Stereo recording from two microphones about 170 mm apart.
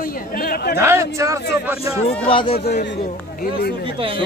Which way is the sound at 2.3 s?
30° left (ahead or behind).